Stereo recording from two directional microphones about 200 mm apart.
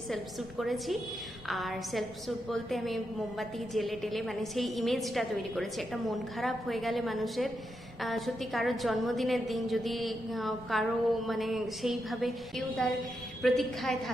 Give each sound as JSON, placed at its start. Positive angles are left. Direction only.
{"t": 0.1, "sound": "a woman's voice", "side_deg": 0}